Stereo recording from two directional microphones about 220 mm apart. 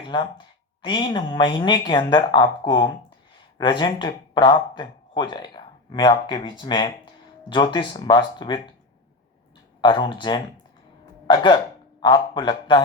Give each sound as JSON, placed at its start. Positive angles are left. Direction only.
{"t": 0.1, "sound": "speech", "side_deg": 20}
{"t": 9.8, "sound": "speech", "side_deg": 20}